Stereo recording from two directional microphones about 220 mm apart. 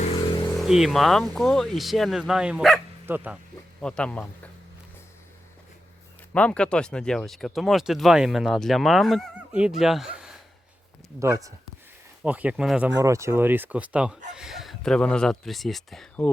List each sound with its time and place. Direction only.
0.0 s vehicle: 25° left (ahead or behind)
0.5 s speech: centre (ahead or behind)
6.3 s speech: 5° left (ahead or behind)
11.2 s speech: 15° right (ahead or behind); by 16.3 s 5° left (ahead or behind)